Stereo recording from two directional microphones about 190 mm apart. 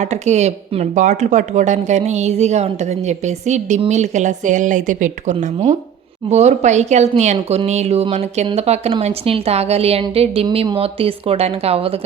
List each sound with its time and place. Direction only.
0.0 s speech: 35° right (ahead or behind)